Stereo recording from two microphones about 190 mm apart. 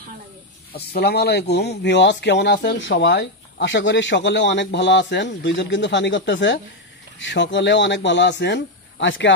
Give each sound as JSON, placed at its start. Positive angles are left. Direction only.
{"t": 0.7, "sound": "speech", "side_deg": 60}